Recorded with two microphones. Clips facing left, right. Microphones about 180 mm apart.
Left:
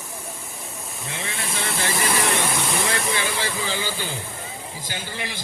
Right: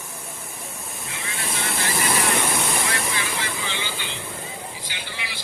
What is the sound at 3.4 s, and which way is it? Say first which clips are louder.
A man's voice: left 4 dB; 40° left (ahead or behind).